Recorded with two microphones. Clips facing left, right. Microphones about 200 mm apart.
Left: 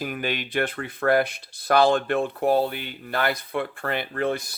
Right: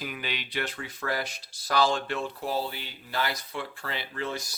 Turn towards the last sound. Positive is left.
turn(degrees=55)  # may be behind; listen again after turning